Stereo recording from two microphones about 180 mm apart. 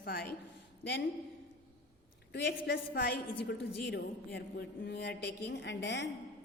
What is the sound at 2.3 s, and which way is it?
A woman's voice, 70° left (ahead or behind).